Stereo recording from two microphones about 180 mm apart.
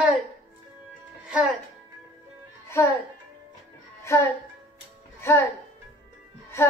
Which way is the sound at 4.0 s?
15° left (ahead or behind).